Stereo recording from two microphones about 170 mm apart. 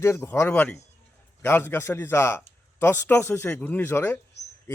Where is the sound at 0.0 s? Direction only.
15° left (ahead or behind).